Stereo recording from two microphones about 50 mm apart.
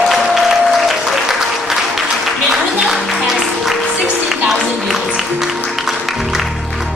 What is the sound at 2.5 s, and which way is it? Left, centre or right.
Music, centre.